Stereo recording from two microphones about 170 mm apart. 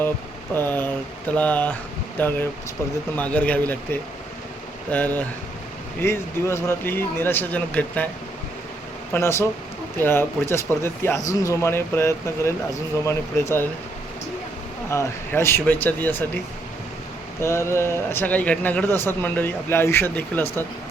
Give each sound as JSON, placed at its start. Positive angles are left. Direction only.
{"t": 0.5, "sound": "speech", "side_deg": 10}
{"t": 4.9, "sound": "speech", "side_deg": 10}
{"t": 9.1, "sound": "speech", "side_deg": 15}
{"t": 14.8, "sound": "speech", "side_deg": 15}
{"t": 17.4, "sound": "speech", "side_deg": 15}